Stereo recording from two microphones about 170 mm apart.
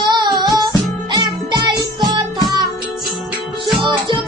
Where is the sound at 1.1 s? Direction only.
25° right (ahead or behind).